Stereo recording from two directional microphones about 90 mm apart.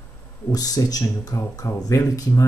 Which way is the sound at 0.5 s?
45° left (ahead or behind).